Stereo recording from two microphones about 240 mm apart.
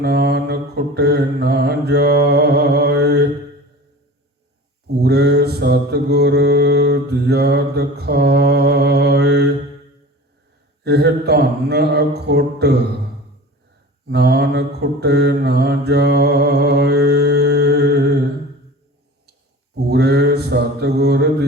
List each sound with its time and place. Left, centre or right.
0.0 s mantra: right
4.9 s mantra: right
10.8 s speech: right
14.1 s mantra: right
19.7 s mantra: right